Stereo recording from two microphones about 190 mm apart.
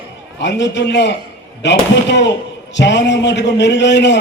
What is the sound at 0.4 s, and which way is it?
A man's voice, 65° left (ahead or behind).